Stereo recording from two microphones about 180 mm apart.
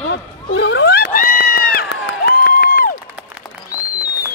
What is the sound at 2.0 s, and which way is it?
Crowd, 60° left (ahead or behind).